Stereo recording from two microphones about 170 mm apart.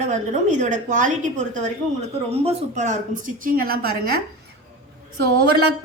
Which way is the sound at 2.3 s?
40° right (ahead or behind).